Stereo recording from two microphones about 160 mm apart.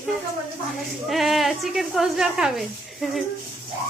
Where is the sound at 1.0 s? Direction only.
Centre (ahead or behind).